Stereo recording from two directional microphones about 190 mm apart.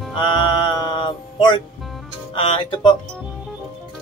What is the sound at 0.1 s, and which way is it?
Music, 25° left (ahead or behind).